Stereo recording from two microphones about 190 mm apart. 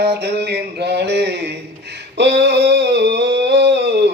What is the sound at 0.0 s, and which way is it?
Mantra, 60° right (ahead or behind).